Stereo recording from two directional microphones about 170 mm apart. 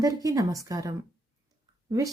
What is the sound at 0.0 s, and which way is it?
Speech, 20° right (ahead or behind).